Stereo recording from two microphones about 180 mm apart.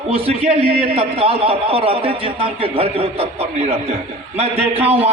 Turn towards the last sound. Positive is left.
turn(degrees=-35)  # may be behind; listen again after turning